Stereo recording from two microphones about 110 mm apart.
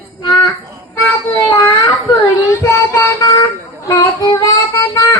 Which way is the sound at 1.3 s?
20° left (ahead or behind).